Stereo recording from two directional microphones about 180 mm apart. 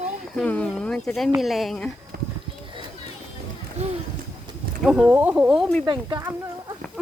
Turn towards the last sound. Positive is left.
turn(degrees=-25)  # may be behind; listen again after turning